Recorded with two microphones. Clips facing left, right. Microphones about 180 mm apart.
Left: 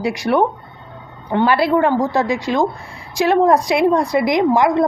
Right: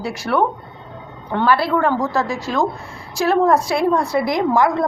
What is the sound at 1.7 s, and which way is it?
A woman's voice, 15° left (ahead or behind).